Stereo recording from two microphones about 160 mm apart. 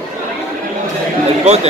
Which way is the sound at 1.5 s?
45° right (ahead or behind).